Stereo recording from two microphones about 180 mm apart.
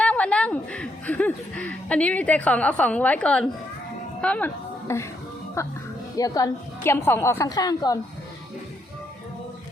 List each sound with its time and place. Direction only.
0.0 s a woman's voice: 5° left (ahead or behind)